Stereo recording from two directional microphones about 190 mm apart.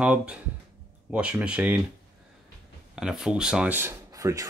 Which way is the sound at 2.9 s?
5° right (ahead or behind).